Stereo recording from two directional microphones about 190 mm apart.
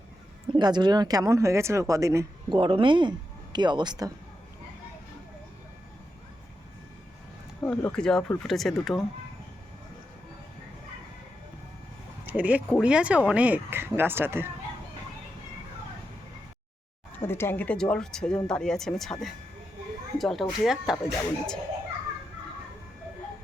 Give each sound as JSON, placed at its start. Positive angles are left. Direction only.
{"t": 0.5, "sound": "speech", "side_deg": -20}
{"t": 2.6, "sound": "speech", "side_deg": -30}
{"t": 7.6, "sound": "speech", "side_deg": 10}
{"t": 12.2, "sound": "speech", "side_deg": -10}
{"t": 17.2, "sound": "speech", "side_deg": 10}
{"t": 20.1, "sound": "speech", "side_deg": 0}